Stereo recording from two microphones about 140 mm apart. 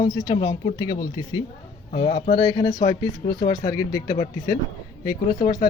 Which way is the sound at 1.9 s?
40° left (ahead or behind).